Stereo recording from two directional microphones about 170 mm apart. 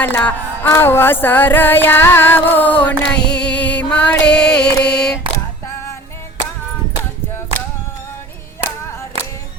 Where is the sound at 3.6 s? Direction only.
10° left (ahead or behind).